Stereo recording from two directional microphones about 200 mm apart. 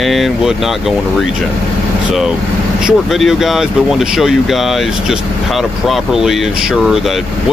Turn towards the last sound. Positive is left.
turn(degrees=0)  # may be behind; listen again after turning